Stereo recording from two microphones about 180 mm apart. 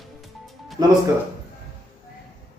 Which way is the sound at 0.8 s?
20° right (ahead or behind).